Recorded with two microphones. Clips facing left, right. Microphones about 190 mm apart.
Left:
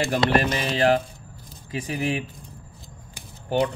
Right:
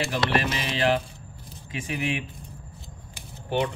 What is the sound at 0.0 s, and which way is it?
Speech, 45° left (ahead or behind).